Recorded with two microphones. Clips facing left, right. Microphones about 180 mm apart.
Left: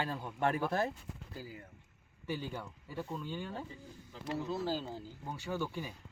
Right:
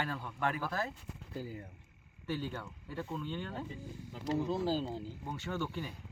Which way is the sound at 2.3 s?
10° left (ahead or behind).